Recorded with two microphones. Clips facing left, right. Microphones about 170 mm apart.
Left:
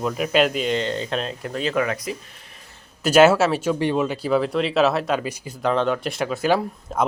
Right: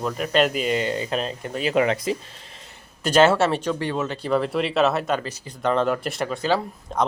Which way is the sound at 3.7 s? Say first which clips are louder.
Left 4 dB; 15° left (ahead or behind).